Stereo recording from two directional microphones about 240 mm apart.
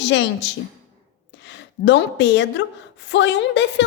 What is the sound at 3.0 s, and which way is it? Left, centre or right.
Speech, left.